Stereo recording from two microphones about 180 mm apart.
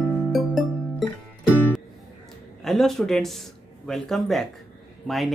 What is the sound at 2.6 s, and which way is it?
Speech, centre (ahead or behind).